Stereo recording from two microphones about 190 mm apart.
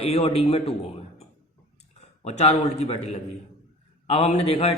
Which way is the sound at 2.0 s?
35° left (ahead or behind).